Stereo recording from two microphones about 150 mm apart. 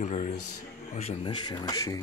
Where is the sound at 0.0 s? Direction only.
50° left (ahead or behind).